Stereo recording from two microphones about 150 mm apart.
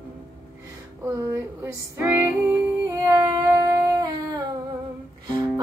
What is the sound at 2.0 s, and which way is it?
Music, 15° right (ahead or behind).